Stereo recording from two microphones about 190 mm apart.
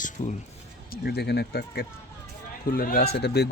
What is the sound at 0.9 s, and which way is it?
Speech, 55° left (ahead or behind).